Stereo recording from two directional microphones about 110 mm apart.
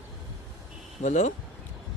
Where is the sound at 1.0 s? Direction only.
90° left.